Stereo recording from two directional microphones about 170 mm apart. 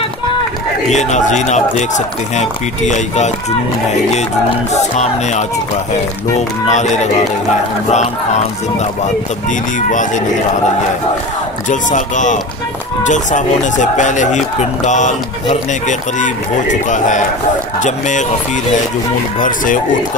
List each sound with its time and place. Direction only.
0.9 s speech: 45° left (ahead or behind)
4.7 s speech: 40° left (ahead or behind)
6.7 s speech: 45° left (ahead or behind)
9.5 s speech: 50° left (ahead or behind)
11.7 s speech: 45° left (ahead or behind)
19.4 s speech: 50° left (ahead or behind)